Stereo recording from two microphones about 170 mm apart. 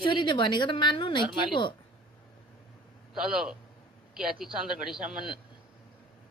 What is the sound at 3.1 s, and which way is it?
Speech, 5° right (ahead or behind).